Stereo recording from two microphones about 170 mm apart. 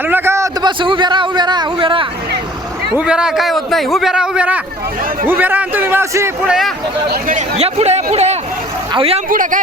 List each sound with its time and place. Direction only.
0.0 s a sound: 10° right (ahead or behind)
0.8 s speech: 30° right (ahead or behind)
3.0 s a man's voice: 5° right (ahead or behind)
6.5 s a man's voice: centre (ahead or behind)
7.3 s speech: 45° right (ahead or behind)
9.3 s speech: 50° right (ahead or behind)